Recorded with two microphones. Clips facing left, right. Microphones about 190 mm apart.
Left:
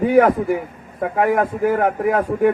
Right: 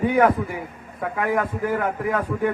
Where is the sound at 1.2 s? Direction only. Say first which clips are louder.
Left 6 dB; 50° left (ahead or behind).